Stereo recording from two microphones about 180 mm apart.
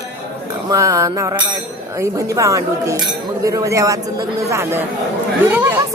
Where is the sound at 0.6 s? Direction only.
20° right (ahead or behind).